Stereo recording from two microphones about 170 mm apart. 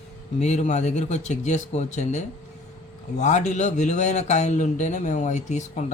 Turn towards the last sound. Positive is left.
turn(degrees=45)  # may be behind; listen again after turning